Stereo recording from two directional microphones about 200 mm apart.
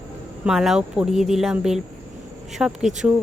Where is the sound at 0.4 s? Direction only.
Centre (ahead or behind).